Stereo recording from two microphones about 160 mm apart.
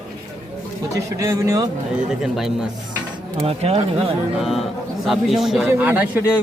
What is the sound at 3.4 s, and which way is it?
Speech, 40° right (ahead or behind).